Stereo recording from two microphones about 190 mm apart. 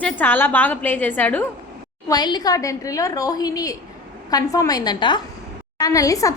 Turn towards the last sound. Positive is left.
turn(degrees=15)  # may be behind; listen again after turning